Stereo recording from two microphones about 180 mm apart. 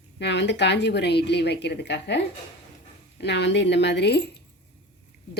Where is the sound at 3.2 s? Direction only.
70° left (ahead or behind).